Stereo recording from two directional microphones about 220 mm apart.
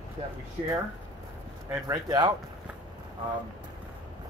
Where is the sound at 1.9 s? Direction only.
20° right (ahead or behind).